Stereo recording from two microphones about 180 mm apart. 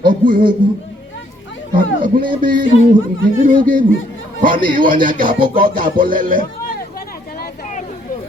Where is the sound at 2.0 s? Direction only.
50° right (ahead or behind).